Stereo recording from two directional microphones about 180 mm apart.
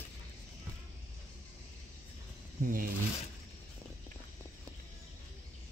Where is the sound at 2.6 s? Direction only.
50° right (ahead or behind).